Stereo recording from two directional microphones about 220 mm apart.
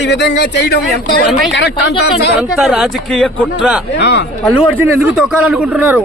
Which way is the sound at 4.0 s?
50° left (ahead or behind).